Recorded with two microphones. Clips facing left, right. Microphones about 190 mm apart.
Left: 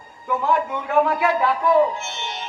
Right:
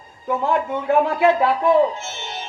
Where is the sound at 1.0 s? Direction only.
25° right (ahead or behind).